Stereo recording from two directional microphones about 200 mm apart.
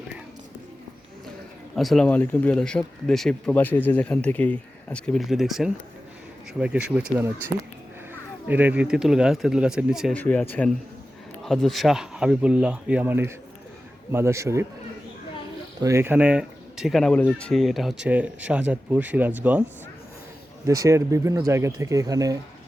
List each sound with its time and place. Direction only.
1.7 s speech: centre (ahead or behind)
15.8 s speech: 15° right (ahead or behind)
20.7 s speech: 15° right (ahead or behind)